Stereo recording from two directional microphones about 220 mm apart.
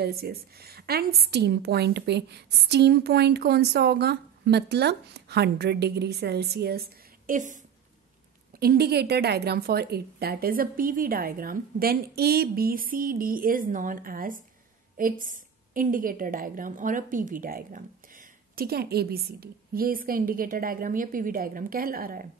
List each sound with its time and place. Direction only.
0.0 s a woman's voice: 45° right (ahead or behind)
7.2 s a woman's voice: 35° right (ahead or behind)
8.5 s a woman's voice: 45° right (ahead or behind)